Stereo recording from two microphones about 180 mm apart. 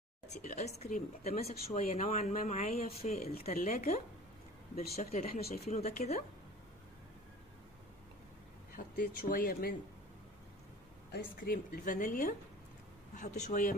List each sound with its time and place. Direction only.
0.3 s a woman's voice: 40° left (ahead or behind)
8.7 s a woman's voice: 50° left (ahead or behind)
11.1 s a woman's voice: 55° left (ahead or behind)